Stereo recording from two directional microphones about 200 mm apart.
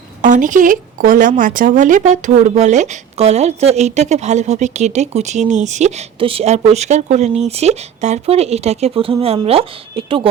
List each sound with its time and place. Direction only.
0.2 s speech: 40° right (ahead or behind)